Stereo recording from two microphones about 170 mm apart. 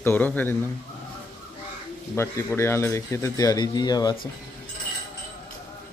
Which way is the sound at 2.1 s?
15° left (ahead or behind).